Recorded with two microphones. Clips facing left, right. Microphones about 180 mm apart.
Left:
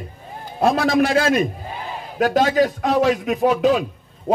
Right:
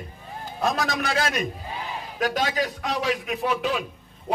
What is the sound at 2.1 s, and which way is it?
A man's voice, 45° left (ahead or behind).